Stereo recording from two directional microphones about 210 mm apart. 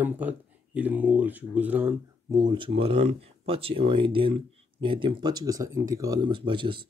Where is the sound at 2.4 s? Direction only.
20° right (ahead or behind).